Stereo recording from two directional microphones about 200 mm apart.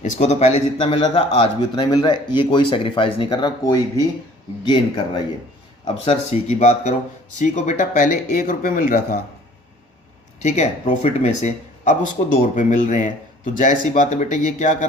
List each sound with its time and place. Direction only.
0.0 s a man's voice: 35° left (ahead or behind)
10.4 s speech: 35° left (ahead or behind)